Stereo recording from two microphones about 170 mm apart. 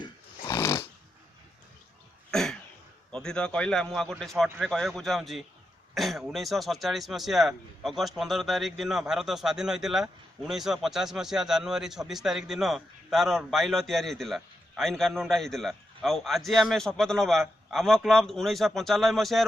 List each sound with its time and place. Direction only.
0.0 s dog: 20° left (ahead or behind)
2.3 s cough: 5° left (ahead or behind)
3.1 s speech: 5° left (ahead or behind)